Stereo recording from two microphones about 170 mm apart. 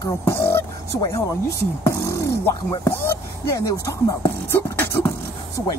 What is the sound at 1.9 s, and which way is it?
Beatboxing, 20° left (ahead or behind).